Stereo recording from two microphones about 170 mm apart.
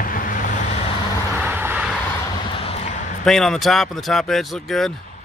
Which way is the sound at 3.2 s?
Centre (ahead or behind).